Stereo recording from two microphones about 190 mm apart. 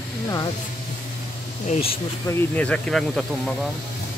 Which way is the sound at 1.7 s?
30° left (ahead or behind).